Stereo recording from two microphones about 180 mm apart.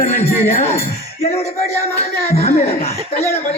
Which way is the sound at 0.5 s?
35° left (ahead or behind).